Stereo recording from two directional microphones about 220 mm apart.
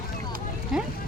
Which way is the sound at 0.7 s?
Centre (ahead or behind).